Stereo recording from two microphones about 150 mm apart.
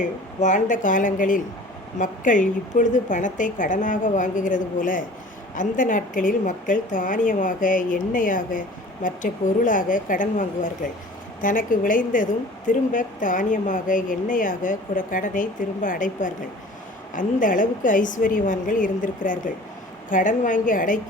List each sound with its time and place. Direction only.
0.3 s a woman's voice: 55° left (ahead or behind)